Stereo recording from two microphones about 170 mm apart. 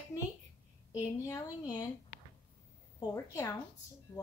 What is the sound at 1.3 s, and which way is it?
Speech, 25° left (ahead or behind).